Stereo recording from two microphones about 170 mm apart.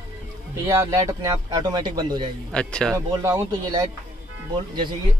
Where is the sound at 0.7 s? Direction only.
20° right (ahead or behind).